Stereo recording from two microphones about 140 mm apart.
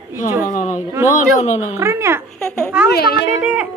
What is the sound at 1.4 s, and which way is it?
Speech, 55° left (ahead or behind).